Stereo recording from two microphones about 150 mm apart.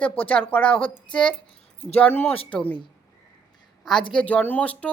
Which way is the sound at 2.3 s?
35° left (ahead or behind).